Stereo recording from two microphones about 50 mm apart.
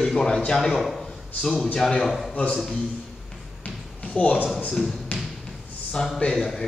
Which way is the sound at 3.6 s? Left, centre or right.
Left.